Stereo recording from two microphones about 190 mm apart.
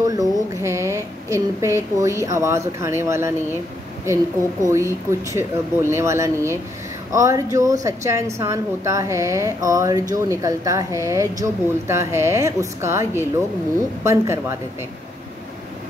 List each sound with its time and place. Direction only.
0.0 s a woman's voice: 20° right (ahead or behind)